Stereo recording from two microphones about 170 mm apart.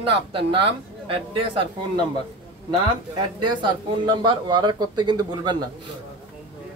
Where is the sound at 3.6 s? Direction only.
25° right (ahead or behind).